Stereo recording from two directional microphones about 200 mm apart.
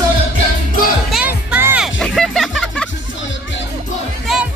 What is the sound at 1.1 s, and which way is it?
Music, 5° right (ahead or behind).